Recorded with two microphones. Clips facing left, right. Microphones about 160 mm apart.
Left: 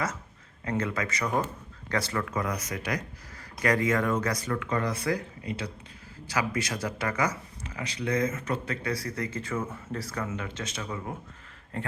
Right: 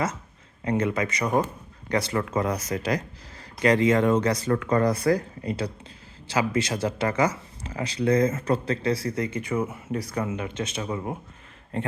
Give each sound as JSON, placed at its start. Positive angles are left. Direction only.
{"t": 0.6, "sound": "speech", "side_deg": -20}
{"t": 6.2, "sound": "speech", "side_deg": -25}